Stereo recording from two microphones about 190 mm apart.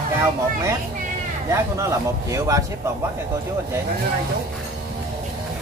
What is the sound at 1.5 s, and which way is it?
A man's voice, 15° right (ahead or behind).